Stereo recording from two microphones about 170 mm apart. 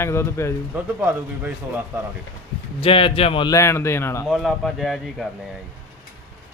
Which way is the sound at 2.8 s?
30° left (ahead or behind).